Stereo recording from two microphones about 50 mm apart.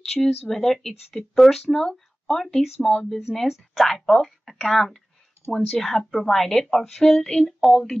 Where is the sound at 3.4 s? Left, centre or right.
Centre.